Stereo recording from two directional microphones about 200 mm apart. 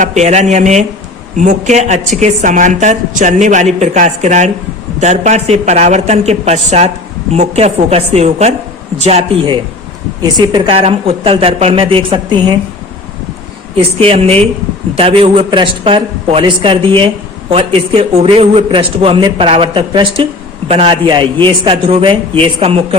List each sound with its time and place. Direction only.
0.0 s a man's voice: 35° right (ahead or behind)
14.0 s a man's voice: 30° right (ahead or behind)